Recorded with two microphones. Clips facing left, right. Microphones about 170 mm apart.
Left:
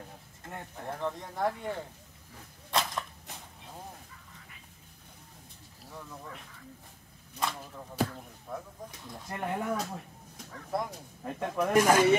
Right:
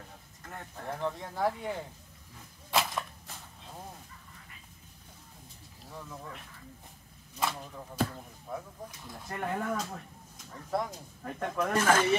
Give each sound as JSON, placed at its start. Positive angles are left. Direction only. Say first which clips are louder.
{"t": 0.4, "sound": "speech", "louder": "left 2 dB", "side_deg": 25}
{"t": 0.8, "sound": "speech", "louder": "right 1 dB", "side_deg": -5}
{"t": 2.7, "sound": "a sound", "louder": "right 1 dB", "side_deg": -5}
{"t": 5.9, "sound": "a sound", "louder": "right 1 dB", "side_deg": -5}
{"t": 7.3, "sound": "speech", "louder": "right 1 dB", "side_deg": 0}
{"t": 9.3, "sound": "speech", "louder": "left 1 dB", "side_deg": 15}
{"t": 11.2, "sound": "speech", "louder": "left 2 dB", "side_deg": 15}